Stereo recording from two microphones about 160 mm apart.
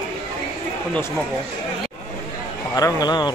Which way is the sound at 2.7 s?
25° left (ahead or behind).